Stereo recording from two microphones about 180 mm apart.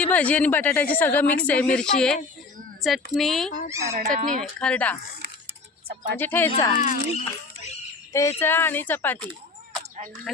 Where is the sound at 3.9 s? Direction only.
40° right (ahead or behind).